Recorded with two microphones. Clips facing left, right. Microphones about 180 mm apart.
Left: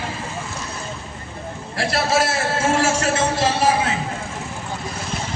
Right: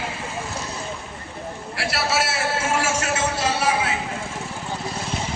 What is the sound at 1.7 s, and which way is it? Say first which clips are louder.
A man's voice: left 4 dB; 40° left (ahead or behind).